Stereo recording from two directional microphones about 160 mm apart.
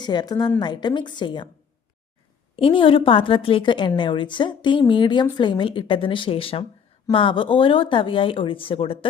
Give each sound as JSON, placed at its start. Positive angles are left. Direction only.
{"t": 0.0, "sound": "a woman's voice", "side_deg": 25}
{"t": 2.6, "sound": "a woman's voice", "side_deg": 35}